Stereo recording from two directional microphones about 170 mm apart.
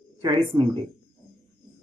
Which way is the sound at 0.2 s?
25° right (ahead or behind).